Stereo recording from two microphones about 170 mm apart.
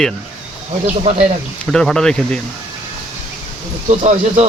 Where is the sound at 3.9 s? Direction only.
40° right (ahead or behind).